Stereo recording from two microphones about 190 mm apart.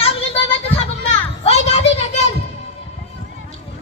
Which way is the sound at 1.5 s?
35° left (ahead or behind).